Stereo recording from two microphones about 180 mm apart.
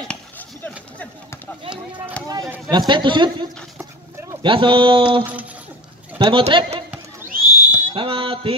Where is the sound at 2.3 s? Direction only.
20° right (ahead or behind).